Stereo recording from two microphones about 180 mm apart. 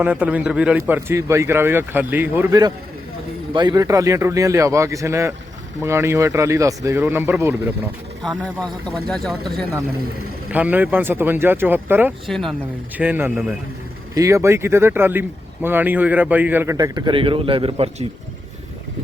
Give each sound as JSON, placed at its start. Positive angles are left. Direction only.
{"t": 0.0, "sound": "speech", "side_deg": -10}
{"t": 3.5, "sound": "speech", "side_deg": -20}
{"t": 8.2, "sound": "speech", "side_deg": 0}
{"t": 10.5, "sound": "speech", "side_deg": -10}
{"t": 12.3, "sound": "speech", "side_deg": 0}
{"t": 13.0, "sound": "speech", "side_deg": -10}
{"t": 16.7, "sound": "a man's voice", "side_deg": -20}